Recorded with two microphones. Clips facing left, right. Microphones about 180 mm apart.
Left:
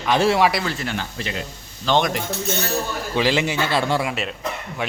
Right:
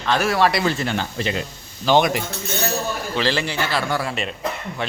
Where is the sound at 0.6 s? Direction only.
25° right (ahead or behind).